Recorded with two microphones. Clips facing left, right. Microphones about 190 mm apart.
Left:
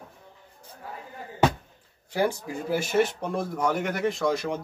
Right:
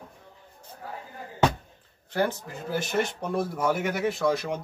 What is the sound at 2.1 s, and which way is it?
A man's voice, 10° left (ahead or behind).